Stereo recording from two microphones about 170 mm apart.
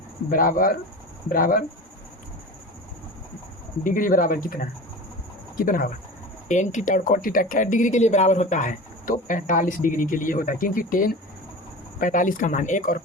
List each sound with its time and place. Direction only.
0.3 s speech: 55° left (ahead or behind)
3.8 s speech: 55° left (ahead or behind)
6.5 s a woman's voice: 45° left (ahead or behind)